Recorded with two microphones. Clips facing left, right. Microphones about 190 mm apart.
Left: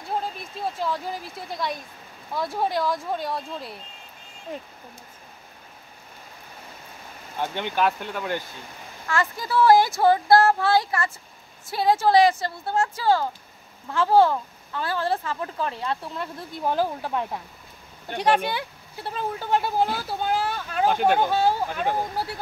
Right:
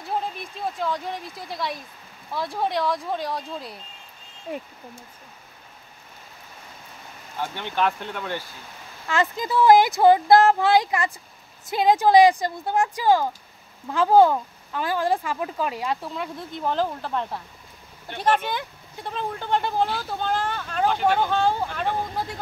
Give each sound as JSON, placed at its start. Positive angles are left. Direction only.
{"t": 0.7, "sound": "speech", "side_deg": 5}
{"t": 7.3, "sound": "speech", "side_deg": 15}
{"t": 9.0, "sound": "speech", "side_deg": -20}
{"t": 16.1, "sound": "speech", "side_deg": 0}